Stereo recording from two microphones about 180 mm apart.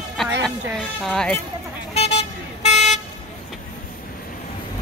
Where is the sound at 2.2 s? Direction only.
40° left (ahead or behind).